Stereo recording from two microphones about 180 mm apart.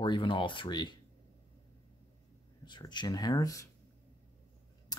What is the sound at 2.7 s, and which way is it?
Speech, 25° left (ahead or behind).